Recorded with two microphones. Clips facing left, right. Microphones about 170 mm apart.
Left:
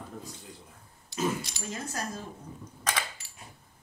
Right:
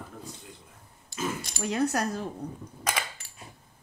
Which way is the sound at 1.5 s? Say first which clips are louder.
Right 10 dB; 70° right (ahead or behind).